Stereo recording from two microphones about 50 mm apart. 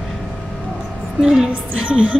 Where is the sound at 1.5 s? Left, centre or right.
Right.